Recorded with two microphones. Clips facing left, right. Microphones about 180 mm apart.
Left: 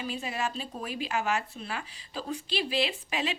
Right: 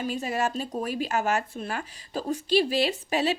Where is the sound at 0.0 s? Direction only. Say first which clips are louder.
Right 5 dB; 45° right (ahead or behind).